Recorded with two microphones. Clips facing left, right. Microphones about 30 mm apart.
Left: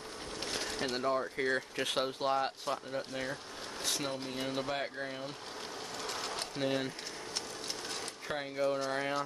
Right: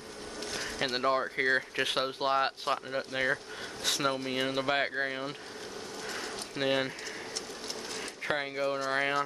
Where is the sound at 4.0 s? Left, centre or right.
Right.